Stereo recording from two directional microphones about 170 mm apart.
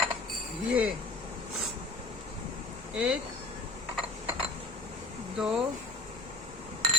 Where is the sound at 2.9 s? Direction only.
5° right (ahead or behind).